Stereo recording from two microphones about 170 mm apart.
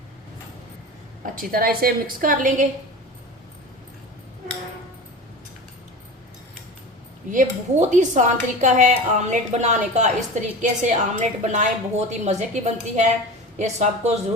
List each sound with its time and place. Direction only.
1.2 s a woman's voice: 55° right (ahead or behind)
7.3 s a woman's voice: 45° right (ahead or behind)